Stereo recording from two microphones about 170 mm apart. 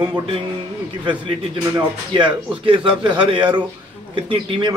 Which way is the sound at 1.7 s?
25° right (ahead or behind).